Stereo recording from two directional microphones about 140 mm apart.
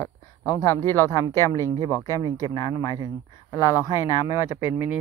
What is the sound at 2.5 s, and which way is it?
Speech, 35° left (ahead or behind).